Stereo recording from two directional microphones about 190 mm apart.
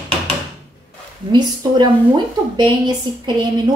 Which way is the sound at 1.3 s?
25° right (ahead or behind).